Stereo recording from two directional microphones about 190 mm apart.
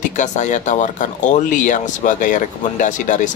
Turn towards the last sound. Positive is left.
turn(degrees=40)  # may be behind; listen again after turning